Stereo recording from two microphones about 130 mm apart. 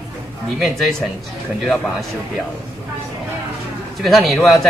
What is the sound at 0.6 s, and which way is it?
Speech, centre (ahead or behind).